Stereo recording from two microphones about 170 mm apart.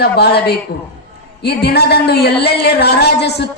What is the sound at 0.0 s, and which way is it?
Speech, 70° left (ahead or behind).